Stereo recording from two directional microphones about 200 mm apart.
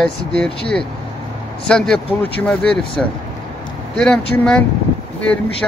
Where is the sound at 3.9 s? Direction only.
5° left (ahead or behind).